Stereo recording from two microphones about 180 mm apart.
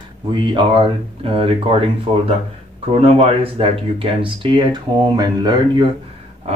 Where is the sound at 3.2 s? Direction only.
35° right (ahead or behind).